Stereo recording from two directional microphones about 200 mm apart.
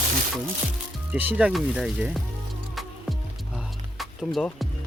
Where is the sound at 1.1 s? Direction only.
10° right (ahead or behind).